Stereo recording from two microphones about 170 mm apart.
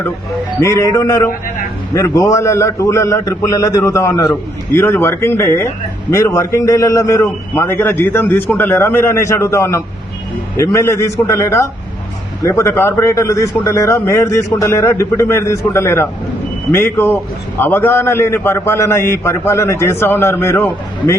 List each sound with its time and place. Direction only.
0.6 s a man's voice: 20° left (ahead or behind)